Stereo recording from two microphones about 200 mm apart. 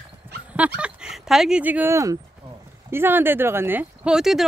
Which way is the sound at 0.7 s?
5° right (ahead or behind).